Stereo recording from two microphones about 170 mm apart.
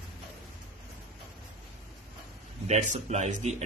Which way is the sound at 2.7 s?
45° right (ahead or behind).